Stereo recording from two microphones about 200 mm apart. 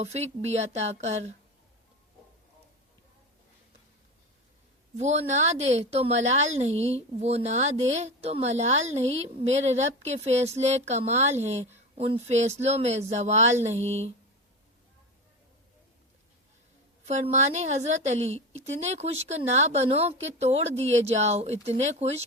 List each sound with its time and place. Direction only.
0.0 s a woman's voice: 35° right (ahead or behind)
4.9 s a woman's voice: 35° right (ahead or behind)
13.8 s speech: 10° left (ahead or behind)
17.1 s a woman's voice: 35° right (ahead or behind)